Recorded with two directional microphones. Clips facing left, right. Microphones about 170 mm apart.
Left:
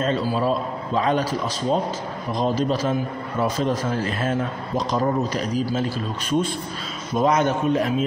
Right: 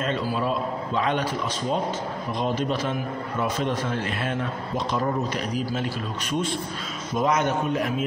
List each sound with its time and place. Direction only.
0.0 s a man's voice: 35° left (ahead or behind)
7.2 s a man's voice: 30° left (ahead or behind)